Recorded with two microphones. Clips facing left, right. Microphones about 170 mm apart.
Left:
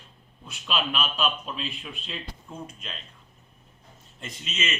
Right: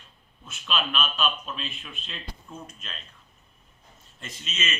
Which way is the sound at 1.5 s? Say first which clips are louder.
Left 2 dB; 15° left (ahead or behind).